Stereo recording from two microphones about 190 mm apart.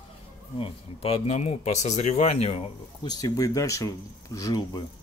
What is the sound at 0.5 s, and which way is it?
Speech, 30° left (ahead or behind).